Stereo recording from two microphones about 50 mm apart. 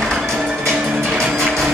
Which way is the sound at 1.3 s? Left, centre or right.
Centre.